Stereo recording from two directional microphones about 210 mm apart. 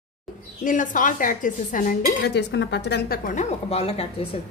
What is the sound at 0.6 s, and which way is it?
Speech, 40° left (ahead or behind).